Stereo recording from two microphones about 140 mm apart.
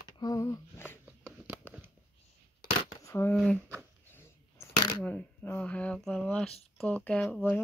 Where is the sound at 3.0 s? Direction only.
20° left (ahead or behind).